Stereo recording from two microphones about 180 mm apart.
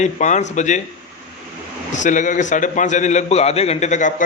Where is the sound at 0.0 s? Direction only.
40° left (ahead or behind).